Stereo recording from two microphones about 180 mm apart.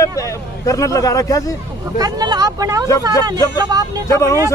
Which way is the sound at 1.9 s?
20° right (ahead or behind).